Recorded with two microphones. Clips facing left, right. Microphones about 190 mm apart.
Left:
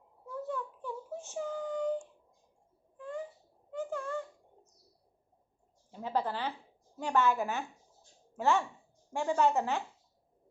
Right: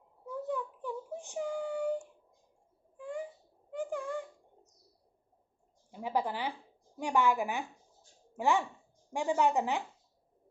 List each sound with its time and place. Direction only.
0.4 s child singing: 15° right (ahead or behind)
3.0 s owl: 15° right (ahead or behind)
3.7 s a sound: 15° right (ahead or behind)
5.9 s a woman's voice: 10° right (ahead or behind)